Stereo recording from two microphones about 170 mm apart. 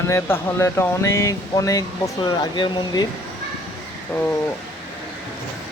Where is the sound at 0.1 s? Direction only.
15° left (ahead or behind).